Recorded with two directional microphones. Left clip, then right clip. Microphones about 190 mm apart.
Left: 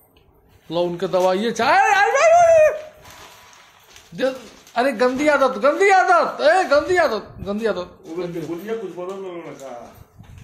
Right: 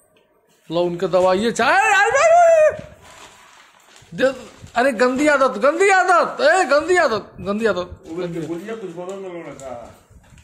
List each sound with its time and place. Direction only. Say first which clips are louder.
0.7 s speech: right 2 dB; 10° right (ahead or behind)
4.2 s a man's voice: right 4 dB; 25° right (ahead or behind)